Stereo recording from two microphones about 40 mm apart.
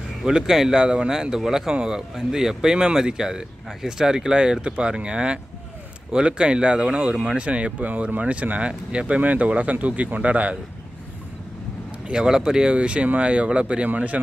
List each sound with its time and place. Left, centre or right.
0.3 s speech: centre; by 10.6 s right
12.1 s speech: centre
12.7 s speech: right
13.8 s speech: right